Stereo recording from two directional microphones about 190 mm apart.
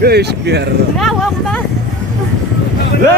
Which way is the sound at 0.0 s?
60° right (ahead or behind).